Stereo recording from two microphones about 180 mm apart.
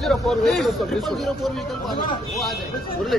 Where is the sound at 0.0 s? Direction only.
Centre (ahead or behind).